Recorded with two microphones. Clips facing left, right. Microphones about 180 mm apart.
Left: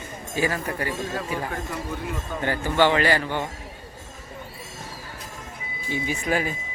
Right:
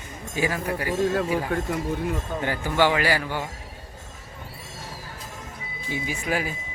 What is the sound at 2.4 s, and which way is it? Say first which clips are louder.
A man's voice: left 2 dB; 10° right (ahead or behind).